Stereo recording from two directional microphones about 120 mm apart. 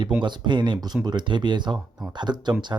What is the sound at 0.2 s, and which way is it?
Speech, 40° right (ahead or behind).